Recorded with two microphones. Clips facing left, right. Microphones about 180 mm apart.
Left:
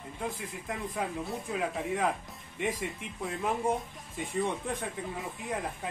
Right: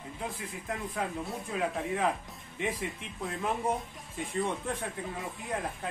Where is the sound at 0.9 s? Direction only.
Centre (ahead or behind).